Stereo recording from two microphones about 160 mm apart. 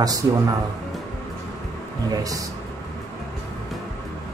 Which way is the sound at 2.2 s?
20° right (ahead or behind).